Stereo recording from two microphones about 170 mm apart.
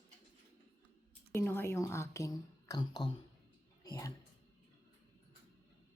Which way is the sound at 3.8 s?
20° left (ahead or behind).